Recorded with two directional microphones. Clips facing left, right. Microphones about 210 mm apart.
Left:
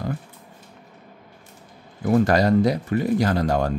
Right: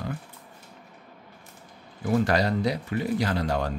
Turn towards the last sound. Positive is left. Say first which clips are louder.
# left 5 dB
turn(degrees=45)  # may be behind; listen again after turning